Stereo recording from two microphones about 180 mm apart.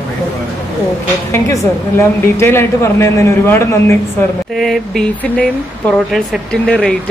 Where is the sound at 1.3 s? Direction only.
15° left (ahead or behind).